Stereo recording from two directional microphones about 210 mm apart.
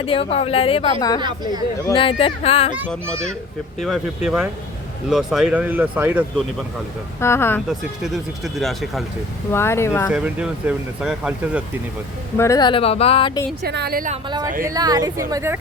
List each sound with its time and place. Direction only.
0.0 s a woman's voice: 25° left (ahead or behind)
3.8 s speech: centre (ahead or behind)
7.2 s speech: 10° left (ahead or behind)
7.7 s speech: centre (ahead or behind)
9.5 s speech: 10° left (ahead or behind)
10.1 s speech: 5° right (ahead or behind)
12.4 s a woman's voice: 15° left (ahead or behind)
13.6 s a woman's voice: 50° right (ahead or behind)
14.1 s speech: 20° right (ahead or behind)